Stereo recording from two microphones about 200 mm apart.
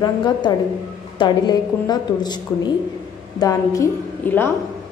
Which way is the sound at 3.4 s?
15° left (ahead or behind).